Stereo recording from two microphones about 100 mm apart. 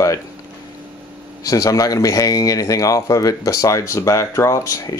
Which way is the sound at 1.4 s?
35° left (ahead or behind).